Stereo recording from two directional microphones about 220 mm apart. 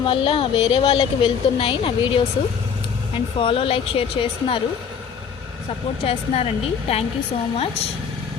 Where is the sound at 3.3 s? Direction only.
25° left (ahead or behind).